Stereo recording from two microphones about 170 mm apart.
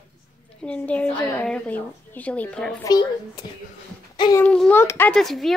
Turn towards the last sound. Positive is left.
turn(degrees=0)  # may be behind; listen again after turning